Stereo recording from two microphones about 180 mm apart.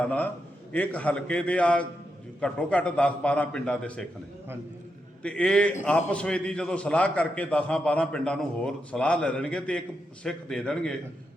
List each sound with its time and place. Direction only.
0.0 s a man's voice: 5° left (ahead or behind)
5.2 s a man's voice: 5° left (ahead or behind)